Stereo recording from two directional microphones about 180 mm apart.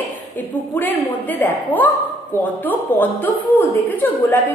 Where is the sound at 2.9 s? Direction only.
10° left (ahead or behind).